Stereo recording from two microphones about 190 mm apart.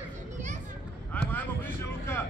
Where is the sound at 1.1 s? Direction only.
10° left (ahead or behind).